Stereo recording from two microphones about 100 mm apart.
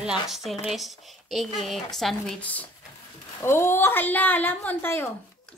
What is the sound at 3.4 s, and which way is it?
A woman's voice, 25° left (ahead or behind).